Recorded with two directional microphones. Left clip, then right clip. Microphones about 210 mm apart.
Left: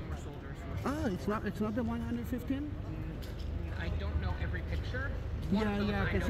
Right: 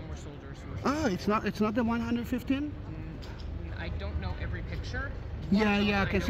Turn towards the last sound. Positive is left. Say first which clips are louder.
# right 6 dB
turn(degrees=-30)  # may be behind; listen again after turning